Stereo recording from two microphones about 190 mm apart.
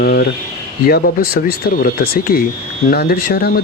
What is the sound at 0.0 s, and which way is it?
Speech, 55° left (ahead or behind).